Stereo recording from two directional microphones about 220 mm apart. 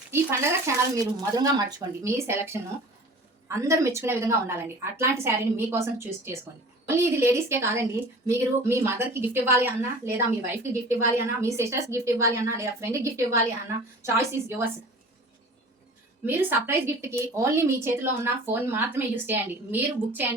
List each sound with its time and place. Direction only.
0.1 s a woman's voice: 10° right (ahead or behind)
16.2 s a woman's voice: 10° right (ahead or behind)